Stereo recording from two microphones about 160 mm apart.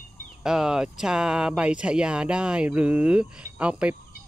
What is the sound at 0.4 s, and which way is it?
Speech, 5° right (ahead or behind).